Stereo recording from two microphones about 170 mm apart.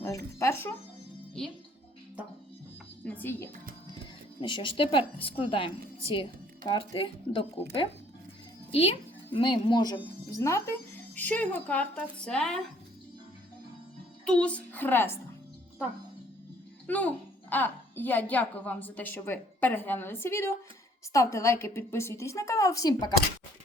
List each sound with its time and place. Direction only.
0.3 s speech: 15° left (ahead or behind)
3.0 s a woman's voice: 10° left (ahead or behind)
4.4 s a woman's voice: 30° left (ahead or behind); by 12.5 s 5° left (ahead or behind)
14.3 s speech: 5° left (ahead or behind)
16.8 s speech: 10° left (ahead or behind)